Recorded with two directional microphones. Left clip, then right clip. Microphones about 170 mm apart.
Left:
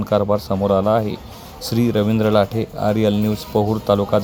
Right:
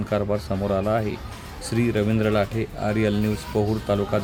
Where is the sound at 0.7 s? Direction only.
20° left (ahead or behind).